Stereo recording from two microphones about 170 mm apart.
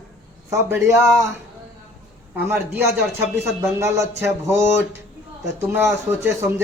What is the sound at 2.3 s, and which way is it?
Speech, 10° right (ahead or behind).